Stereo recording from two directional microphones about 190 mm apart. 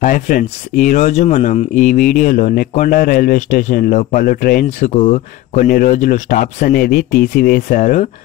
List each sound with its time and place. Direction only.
0.0 s speech: 45° left (ahead or behind)